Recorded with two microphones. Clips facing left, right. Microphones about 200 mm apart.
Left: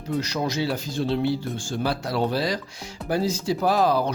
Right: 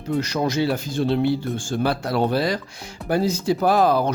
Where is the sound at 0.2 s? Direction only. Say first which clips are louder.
Right 4 dB; 50° right (ahead or behind).